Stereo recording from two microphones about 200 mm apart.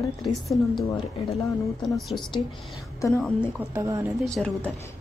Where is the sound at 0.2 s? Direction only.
Centre (ahead or behind).